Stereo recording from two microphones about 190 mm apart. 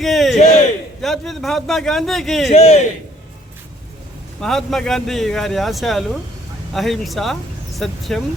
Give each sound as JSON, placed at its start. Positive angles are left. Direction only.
{"t": 0.0, "sound": "speech", "side_deg": 0}
{"t": 2.5, "sound": "a man's voice", "side_deg": 35}
{"t": 4.4, "sound": "speech", "side_deg": 0}